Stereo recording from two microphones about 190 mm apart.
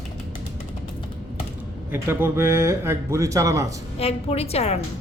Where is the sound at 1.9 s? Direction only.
10° right (ahead or behind).